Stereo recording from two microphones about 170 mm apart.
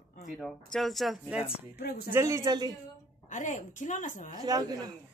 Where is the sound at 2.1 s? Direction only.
15° right (ahead or behind).